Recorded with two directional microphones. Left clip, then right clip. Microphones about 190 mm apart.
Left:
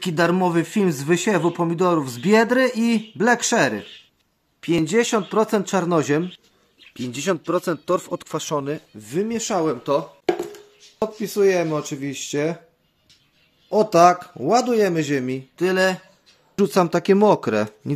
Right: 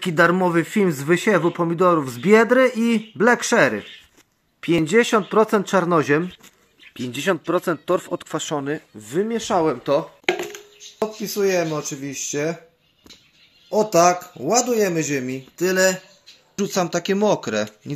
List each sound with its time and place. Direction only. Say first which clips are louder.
0.0 s speech: right 2 dB; 10° left (ahead or behind)
6.9 s speech: right 2 dB; 15° left (ahead or behind)
9.7 s speech: right 1 dB; centre (ahead or behind)
11.3 s speech: left 2 dB; 35° left (ahead or behind)
13.7 s speech: left 2 dB; 30° left (ahead or behind)
15.5 s speech: right 1 dB; 15° left (ahead or behind)
16.5 s speech: left 4 dB; 50° left (ahead or behind)